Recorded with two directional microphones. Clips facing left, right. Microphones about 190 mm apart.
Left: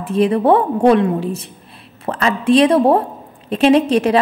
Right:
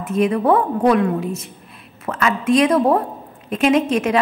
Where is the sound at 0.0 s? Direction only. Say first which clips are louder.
Left 3 dB; 30° left (ahead or behind).